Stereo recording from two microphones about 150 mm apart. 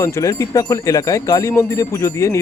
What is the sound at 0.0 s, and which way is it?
Speech, 20° left (ahead or behind).